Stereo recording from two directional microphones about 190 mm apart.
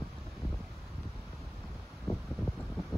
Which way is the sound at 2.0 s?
5° left (ahead or behind).